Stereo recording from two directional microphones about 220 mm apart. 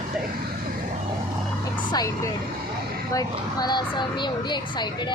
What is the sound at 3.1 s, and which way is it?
Speech, 15° left (ahead or behind).